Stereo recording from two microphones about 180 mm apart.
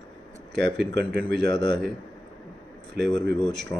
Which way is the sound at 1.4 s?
25° left (ahead or behind).